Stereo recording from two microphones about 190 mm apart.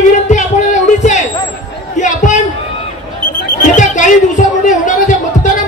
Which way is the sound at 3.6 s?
40° left (ahead or behind).